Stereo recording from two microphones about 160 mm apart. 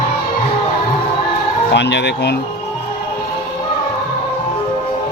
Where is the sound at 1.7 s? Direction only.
90° left.